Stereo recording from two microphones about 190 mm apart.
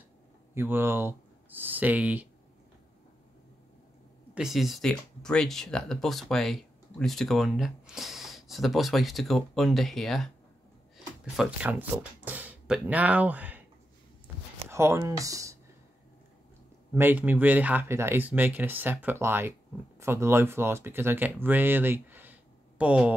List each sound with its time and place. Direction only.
0.6 s speech: 10° right (ahead or behind)
4.4 s speech: centre (ahead or behind)
11.3 s speech: 5° right (ahead or behind)
14.2 s a sound: 15° right (ahead or behind)
16.9 s speech: 10° right (ahead or behind)